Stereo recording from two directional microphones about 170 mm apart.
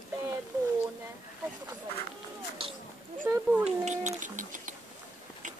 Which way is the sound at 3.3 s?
10° right (ahead or behind).